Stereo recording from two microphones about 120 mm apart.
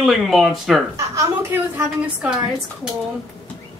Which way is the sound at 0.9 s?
25° right (ahead or behind).